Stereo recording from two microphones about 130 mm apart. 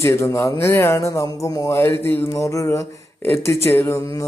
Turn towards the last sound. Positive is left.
turn(degrees=25)  # may be behind; listen again after turning